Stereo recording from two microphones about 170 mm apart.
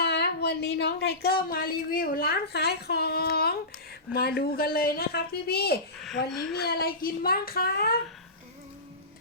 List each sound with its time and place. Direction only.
0.0 s a woman's voice: 70° left (ahead or behind)